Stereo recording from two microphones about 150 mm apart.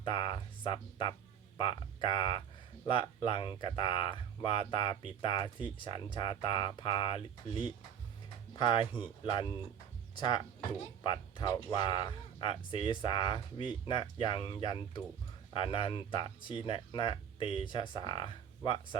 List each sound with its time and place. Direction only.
0.0 s speech: 35° left (ahead or behind)